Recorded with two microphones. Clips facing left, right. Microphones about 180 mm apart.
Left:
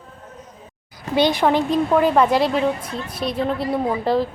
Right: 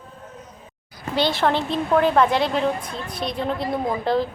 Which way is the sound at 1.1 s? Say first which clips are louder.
Left 4 dB; 15° left (ahead or behind).